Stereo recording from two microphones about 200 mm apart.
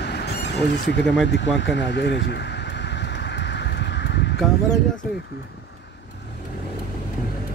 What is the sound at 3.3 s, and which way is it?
Vehicle, 60° left (ahead or behind).